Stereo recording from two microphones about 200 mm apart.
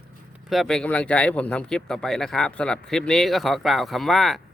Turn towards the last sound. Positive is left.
turn(degrees=0)  # may be behind; listen again after turning